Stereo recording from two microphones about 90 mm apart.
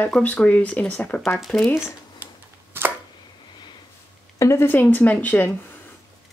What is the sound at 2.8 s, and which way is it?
Chopping, 25° right (ahead or behind).